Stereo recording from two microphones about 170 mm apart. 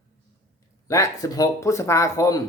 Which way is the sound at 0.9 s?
20° left (ahead or behind).